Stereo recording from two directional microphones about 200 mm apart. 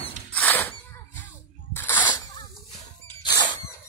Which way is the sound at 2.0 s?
20° left (ahead or behind).